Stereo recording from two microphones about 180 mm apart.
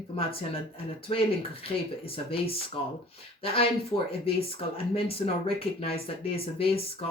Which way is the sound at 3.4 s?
30° left (ahead or behind).